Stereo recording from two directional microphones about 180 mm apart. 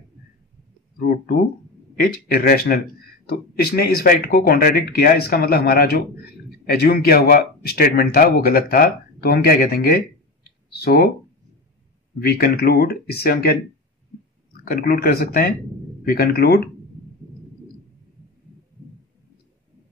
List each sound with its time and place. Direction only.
0.9 s speech: 55° left (ahead or behind)
12.2 s speech: 60° left (ahead or behind)
14.6 s speech: 55° left (ahead or behind)